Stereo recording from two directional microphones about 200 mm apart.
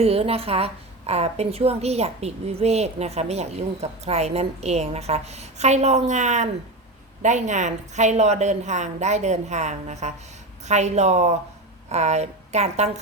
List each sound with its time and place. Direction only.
0.0 s a woman's voice: 30° right (ahead or behind)